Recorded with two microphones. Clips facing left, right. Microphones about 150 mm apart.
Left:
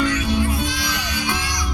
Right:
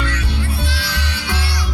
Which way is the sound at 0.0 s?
15° left (ahead or behind).